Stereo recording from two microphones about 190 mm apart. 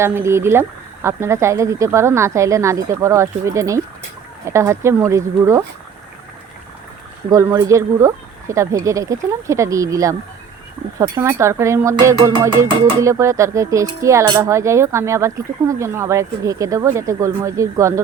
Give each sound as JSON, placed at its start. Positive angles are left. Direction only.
{"t": 0.0, "sound": "speech", "side_deg": -15}
{"t": 7.3, "sound": "speech", "side_deg": -15}